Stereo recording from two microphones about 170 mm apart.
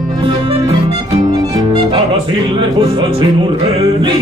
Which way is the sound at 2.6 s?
30° right (ahead or behind).